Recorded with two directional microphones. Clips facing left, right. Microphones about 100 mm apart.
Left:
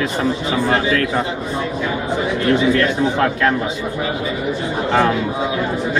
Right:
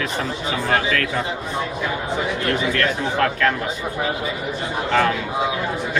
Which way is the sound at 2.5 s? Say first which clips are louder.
Left 7 dB; 25° left (ahead or behind).